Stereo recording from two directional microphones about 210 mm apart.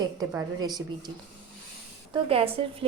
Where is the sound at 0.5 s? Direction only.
20° right (ahead or behind).